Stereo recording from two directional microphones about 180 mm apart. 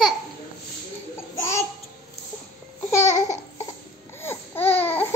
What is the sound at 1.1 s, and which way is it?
Babbling, 15° left (ahead or behind).